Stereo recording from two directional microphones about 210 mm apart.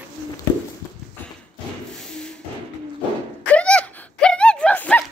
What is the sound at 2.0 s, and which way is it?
Music, 5° left (ahead or behind).